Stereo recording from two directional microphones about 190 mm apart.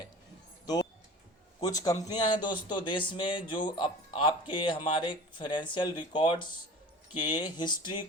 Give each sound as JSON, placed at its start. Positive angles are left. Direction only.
{"t": 1.6, "sound": "speech", "side_deg": 20}